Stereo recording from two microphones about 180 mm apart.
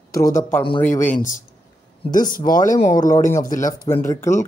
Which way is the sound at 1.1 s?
45° left (ahead or behind).